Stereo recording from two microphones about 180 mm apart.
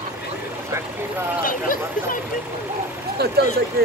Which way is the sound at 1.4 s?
50° left (ahead or behind).